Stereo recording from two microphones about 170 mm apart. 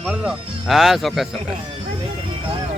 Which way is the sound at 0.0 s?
5° right (ahead or behind).